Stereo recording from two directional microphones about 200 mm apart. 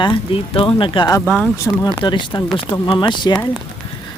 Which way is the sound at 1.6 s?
20° left (ahead or behind).